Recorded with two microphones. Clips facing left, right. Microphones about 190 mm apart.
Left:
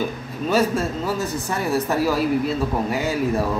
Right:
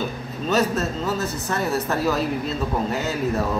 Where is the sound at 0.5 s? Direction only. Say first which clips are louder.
Left 1 dB; 10° left (ahead or behind).